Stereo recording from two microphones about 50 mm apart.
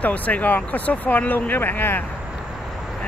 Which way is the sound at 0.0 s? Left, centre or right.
Left.